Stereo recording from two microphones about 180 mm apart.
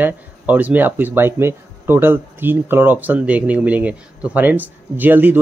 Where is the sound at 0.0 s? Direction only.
10° right (ahead or behind).